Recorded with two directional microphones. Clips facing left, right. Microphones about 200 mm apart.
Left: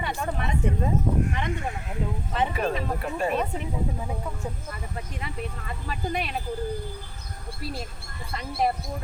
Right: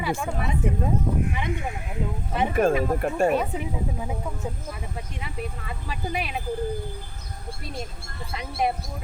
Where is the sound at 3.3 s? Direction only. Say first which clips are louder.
Right 3 dB; 5° right (ahead or behind).